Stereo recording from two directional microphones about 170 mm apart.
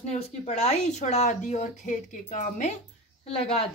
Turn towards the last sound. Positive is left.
turn(degrees=35)  # may be behind; listen again after turning